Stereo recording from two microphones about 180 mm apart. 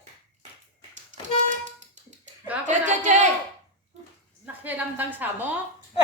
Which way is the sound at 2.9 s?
40° right (ahead or behind).